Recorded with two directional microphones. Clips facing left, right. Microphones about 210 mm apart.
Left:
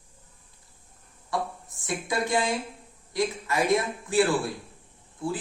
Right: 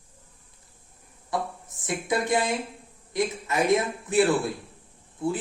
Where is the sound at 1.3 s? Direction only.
20° right (ahead or behind).